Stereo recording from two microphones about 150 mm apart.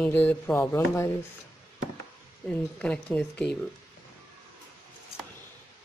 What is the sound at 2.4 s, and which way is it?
Speech, 5° left (ahead or behind).